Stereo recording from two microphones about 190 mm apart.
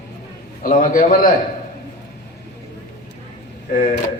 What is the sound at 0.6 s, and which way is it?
Speech, 45° left (ahead or behind).